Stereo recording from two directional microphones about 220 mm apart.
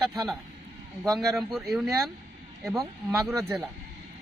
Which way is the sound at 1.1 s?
Centre (ahead or behind).